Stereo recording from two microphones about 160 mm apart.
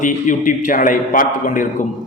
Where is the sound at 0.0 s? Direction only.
55° left (ahead or behind).